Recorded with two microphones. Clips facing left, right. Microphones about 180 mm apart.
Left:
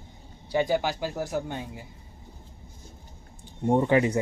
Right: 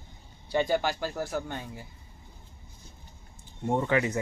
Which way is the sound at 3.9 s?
30° left (ahead or behind).